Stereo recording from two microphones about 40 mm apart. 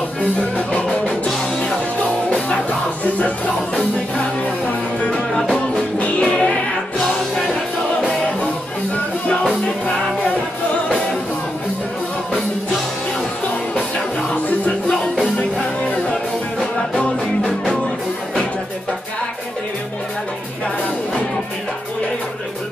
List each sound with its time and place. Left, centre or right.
0.2 s music: left
5.9 s music: left
6.2 s music: left
13.9 s music: left
14.9 s music: left